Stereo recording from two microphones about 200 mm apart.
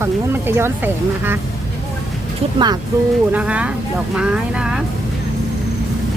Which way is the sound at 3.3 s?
5° right (ahead or behind).